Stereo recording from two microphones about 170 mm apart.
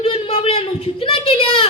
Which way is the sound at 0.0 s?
35° left (ahead or behind).